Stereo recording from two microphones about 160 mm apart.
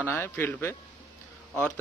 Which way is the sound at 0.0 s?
10° left (ahead or behind).